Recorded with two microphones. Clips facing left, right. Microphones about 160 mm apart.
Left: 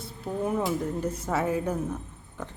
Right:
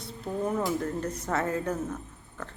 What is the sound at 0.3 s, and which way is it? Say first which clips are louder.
Speech: left 1 dB; 10° left (ahead or behind).